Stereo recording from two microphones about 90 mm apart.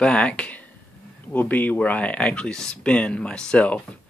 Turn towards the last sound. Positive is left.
turn(degrees=15)  # may be behind; listen again after turning